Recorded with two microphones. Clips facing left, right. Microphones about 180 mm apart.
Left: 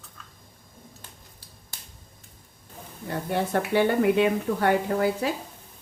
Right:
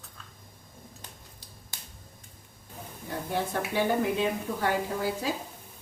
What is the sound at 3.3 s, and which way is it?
A woman's voice, 65° left (ahead or behind).